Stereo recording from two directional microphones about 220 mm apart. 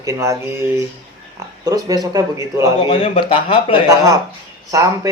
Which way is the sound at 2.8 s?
25° left (ahead or behind).